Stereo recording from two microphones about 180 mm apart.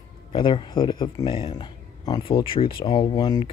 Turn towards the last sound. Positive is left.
turn(degrees=20)  # may be behind; listen again after turning